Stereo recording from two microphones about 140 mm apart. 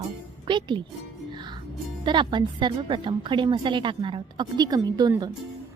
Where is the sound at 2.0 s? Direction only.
35° right (ahead or behind).